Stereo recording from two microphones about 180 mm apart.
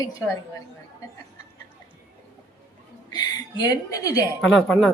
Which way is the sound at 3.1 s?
20° left (ahead or behind).